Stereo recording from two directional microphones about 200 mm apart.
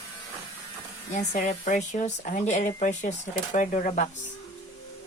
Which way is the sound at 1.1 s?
35° left (ahead or behind).